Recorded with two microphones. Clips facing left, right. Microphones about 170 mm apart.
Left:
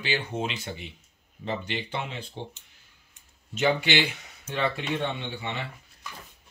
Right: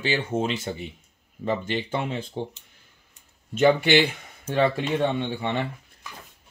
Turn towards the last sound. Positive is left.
turn(degrees=-50)  # may be behind; listen again after turning